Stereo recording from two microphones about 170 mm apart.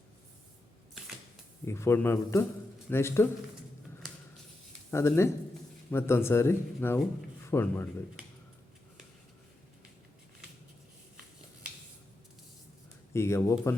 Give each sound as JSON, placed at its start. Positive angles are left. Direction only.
{"t": 1.6, "sound": "a man's voice", "side_deg": 15}
{"t": 4.9, "sound": "a man's voice", "side_deg": 15}
{"t": 13.1, "sound": "a man's voice", "side_deg": 15}